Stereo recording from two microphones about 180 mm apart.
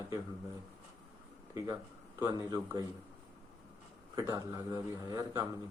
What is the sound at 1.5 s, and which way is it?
Speech, 15° right (ahead or behind).